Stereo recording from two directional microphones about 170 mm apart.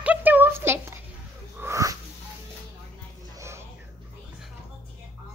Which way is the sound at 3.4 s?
15° right (ahead or behind).